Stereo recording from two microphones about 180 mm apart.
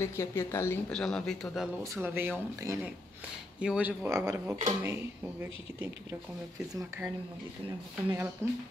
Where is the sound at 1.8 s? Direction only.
15° right (ahead or behind).